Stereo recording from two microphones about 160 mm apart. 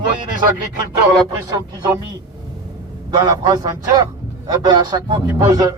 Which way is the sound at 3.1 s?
25° right (ahead or behind).